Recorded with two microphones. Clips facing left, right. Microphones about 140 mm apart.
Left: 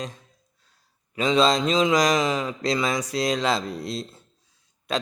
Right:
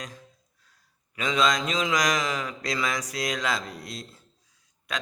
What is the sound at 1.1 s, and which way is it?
Mantra, 30° left (ahead or behind).